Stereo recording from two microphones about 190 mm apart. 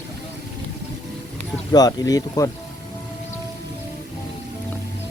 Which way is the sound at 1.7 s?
20° left (ahead or behind).